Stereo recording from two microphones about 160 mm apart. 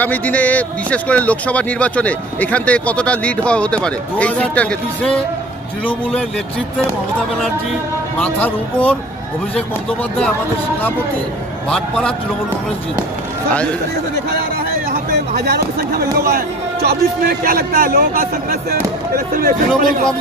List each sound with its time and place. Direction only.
0.0 s a man's voice: 10° left (ahead or behind)
8.2 s a man's voice: 10° left (ahead or behind)
11.7 s speech: 5° left (ahead or behind)
15.4 s a man's voice: 85° right; by 20.0 s 65° right (ahead or behind)